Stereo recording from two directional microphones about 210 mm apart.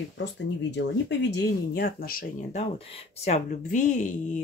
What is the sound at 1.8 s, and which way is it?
Speech, 45° left (ahead or behind).